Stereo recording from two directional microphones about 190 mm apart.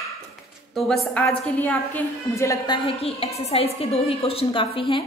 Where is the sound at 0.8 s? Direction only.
Centre (ahead or behind); by 5.0 s 25° left (ahead or behind).